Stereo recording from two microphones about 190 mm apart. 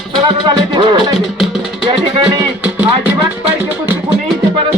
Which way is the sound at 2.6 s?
5° right (ahead or behind).